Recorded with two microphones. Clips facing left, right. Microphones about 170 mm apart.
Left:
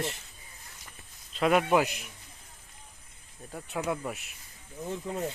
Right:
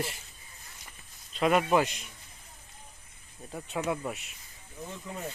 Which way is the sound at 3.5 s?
Centre (ahead or behind).